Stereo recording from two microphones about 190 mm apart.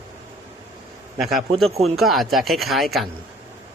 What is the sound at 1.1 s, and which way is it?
Speech, centre (ahead or behind).